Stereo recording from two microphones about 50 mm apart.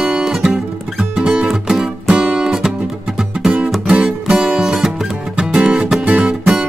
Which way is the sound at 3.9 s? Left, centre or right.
Centre.